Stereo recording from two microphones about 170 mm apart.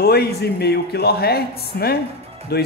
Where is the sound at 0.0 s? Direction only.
70° left (ahead or behind).